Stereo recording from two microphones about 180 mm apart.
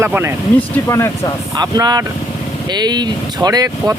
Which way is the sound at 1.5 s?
20° right (ahead or behind).